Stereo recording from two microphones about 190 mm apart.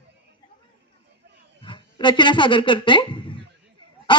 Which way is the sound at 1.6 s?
25° left (ahead or behind).